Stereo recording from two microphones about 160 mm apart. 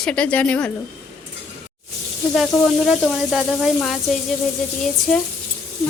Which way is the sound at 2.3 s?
Centre (ahead or behind).